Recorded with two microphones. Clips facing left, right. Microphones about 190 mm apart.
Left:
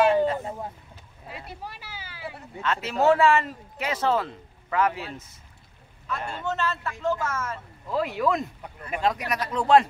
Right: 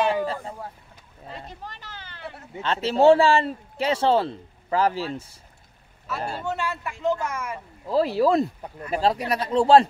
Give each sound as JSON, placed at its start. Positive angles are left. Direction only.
{"t": 1.3, "sound": "a sound", "side_deg": 10}
{"t": 2.5, "sound": "speech", "side_deg": -30}
{"t": 6.1, "sound": "a man's voice", "side_deg": -5}
{"t": 7.9, "sound": "speech", "side_deg": -35}